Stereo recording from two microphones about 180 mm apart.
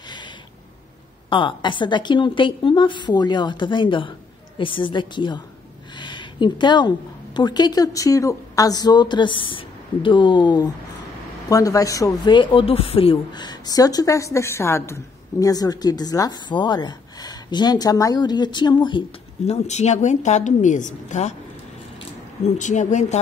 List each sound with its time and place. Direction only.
1.3 s speech: 25° left (ahead or behind)
5.9 s a sound: 25° left (ahead or behind)
7.3 s speech: 25° left (ahead or behind); by 21.3 s 45° left (ahead or behind)
22.6 s speech: 40° left (ahead or behind)